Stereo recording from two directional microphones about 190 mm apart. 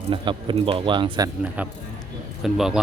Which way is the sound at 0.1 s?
25° right (ahead or behind).